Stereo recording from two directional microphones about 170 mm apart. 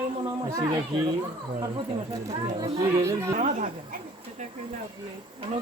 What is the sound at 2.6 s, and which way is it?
Speech, 20° right (ahead or behind).